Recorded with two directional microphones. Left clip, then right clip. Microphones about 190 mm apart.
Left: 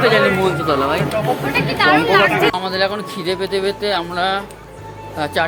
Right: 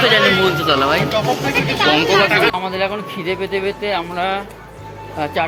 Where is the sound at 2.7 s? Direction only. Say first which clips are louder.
Left 1 dB; 10° left (ahead or behind).